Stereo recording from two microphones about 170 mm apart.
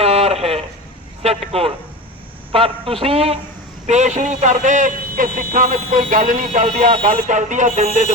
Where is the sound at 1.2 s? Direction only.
35° right (ahead or behind).